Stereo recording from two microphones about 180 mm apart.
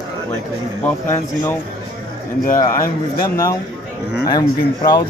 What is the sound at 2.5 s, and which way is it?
Speech, 15° left (ahead or behind).